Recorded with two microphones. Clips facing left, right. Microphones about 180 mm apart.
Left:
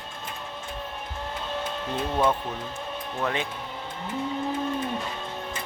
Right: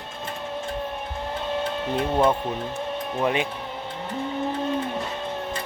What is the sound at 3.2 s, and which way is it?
Speech, 15° right (ahead or behind).